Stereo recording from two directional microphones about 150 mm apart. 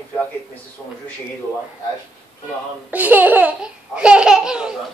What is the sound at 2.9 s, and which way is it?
Speech, 10° right (ahead or behind).